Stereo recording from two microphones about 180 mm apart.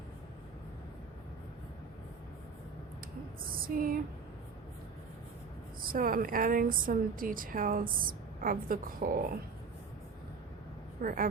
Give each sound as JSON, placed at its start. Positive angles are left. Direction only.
{"t": 3.5, "sound": "a sound", "side_deg": -50}
{"t": 5.8, "sound": "a woman's voice", "side_deg": -50}
{"t": 11.0, "sound": "a woman's voice", "side_deg": -50}